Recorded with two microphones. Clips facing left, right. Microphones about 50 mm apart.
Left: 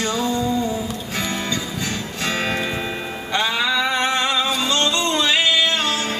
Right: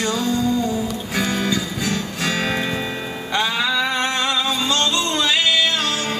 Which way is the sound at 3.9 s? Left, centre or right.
Centre.